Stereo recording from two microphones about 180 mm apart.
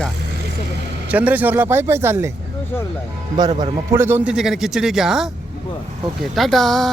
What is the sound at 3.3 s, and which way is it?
Speech, 25° right (ahead or behind).